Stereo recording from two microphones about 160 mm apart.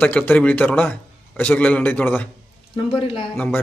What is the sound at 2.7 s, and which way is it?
Speech, 35° left (ahead or behind).